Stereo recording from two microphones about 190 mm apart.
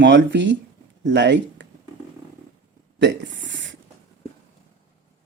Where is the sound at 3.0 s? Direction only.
65° right (ahead or behind).